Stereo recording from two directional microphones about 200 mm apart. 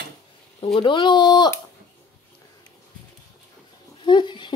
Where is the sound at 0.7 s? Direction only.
25° left (ahead or behind).